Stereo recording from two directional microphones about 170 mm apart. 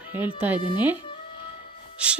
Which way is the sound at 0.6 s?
30° left (ahead or behind).